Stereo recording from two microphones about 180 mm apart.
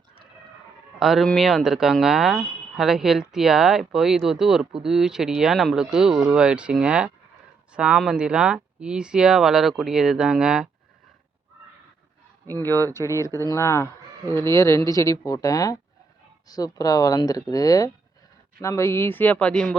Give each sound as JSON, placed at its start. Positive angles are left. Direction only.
{"t": 0.9, "sound": "speech", "side_deg": 0}
{"t": 12.5, "sound": "speech", "side_deg": 10}